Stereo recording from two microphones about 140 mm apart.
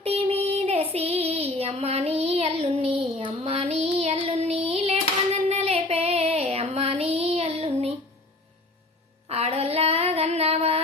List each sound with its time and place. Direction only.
0.0 s child singing: 45° right (ahead or behind)
9.3 s female singing: 45° right (ahead or behind)